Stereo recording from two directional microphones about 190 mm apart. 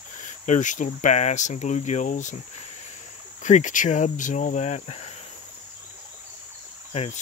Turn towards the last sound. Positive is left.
turn(degrees=35)  # may be behind; listen again after turning